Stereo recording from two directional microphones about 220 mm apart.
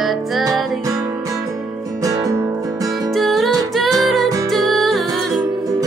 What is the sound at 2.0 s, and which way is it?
Music, 15° right (ahead or behind).